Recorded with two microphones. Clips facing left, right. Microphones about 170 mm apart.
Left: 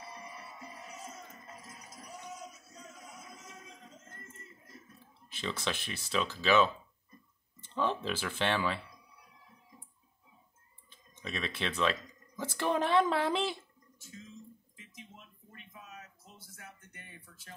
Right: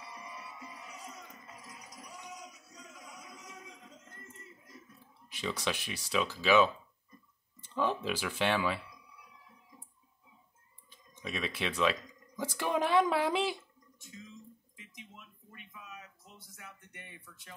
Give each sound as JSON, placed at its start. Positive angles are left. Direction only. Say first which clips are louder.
{"t": 0.2, "sound": "music", "louder": "even", "side_deg": 40}
{"t": 2.2, "sound": "a sound", "louder": "left 2 dB", "side_deg": 45}
{"t": 2.9, "sound": "music", "louder": "even", "side_deg": 25}
{"t": 3.7, "sound": "a sound", "louder": "left 1 dB", "side_deg": 45}
{"t": 5.4, "sound": "speech", "louder": "right 1 dB", "side_deg": -5}
{"t": 7.7, "sound": "speech", "louder": "right 1 dB", "side_deg": -5}
{"t": 11.2, "sound": "speech", "louder": "right 1 dB", "side_deg": -5}
{"t": 14.8, "sound": "a sound", "louder": "right 1 dB", "side_deg": 35}
{"t": 16.4, "sound": "music", "louder": "even", "side_deg": 30}